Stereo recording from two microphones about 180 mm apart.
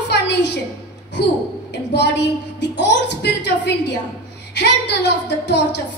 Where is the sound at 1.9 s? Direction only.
70° left (ahead or behind).